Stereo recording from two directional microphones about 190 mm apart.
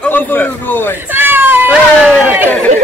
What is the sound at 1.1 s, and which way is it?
Speech, 10° right (ahead or behind).